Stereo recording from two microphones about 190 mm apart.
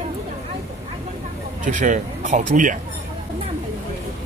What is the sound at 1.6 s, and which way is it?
Speech, 40° right (ahead or behind).